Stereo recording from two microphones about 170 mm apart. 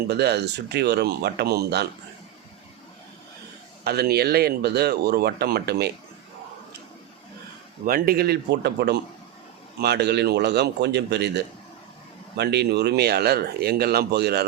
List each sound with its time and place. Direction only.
0.1 s speech: 75° right (ahead or behind)
3.8 s speech: 70° right (ahead or behind)
7.9 s speech: 60° right (ahead or behind)